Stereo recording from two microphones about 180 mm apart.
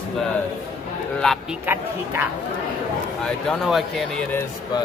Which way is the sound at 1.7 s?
10° right (ahead or behind).